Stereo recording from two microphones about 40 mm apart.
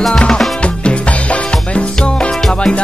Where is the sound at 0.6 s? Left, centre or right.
Left.